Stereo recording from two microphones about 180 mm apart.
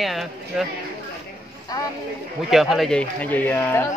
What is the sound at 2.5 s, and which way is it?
Speech, centre (ahead or behind).